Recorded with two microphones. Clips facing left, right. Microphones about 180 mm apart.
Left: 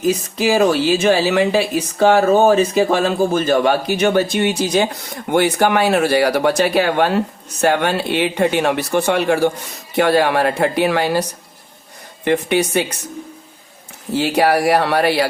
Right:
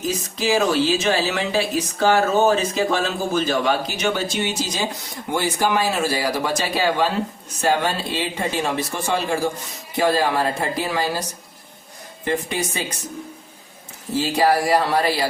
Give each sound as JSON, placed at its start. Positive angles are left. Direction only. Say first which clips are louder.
{"t": 0.3, "sound": "speech", "louder": "left 3 dB", "side_deg": 60}
{"t": 12.2, "sound": "speech", "louder": "left 7 dB", "side_deg": 70}
{"t": 14.2, "sound": "speech", "louder": "left 3 dB", "side_deg": 70}